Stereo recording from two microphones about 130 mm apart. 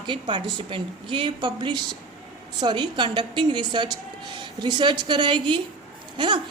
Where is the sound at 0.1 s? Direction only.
40° right (ahead or behind).